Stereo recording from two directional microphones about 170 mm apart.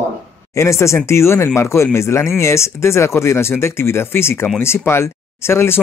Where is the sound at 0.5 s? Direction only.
15° left (ahead or behind).